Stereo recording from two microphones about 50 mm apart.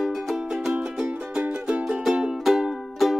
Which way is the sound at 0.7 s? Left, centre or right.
Right.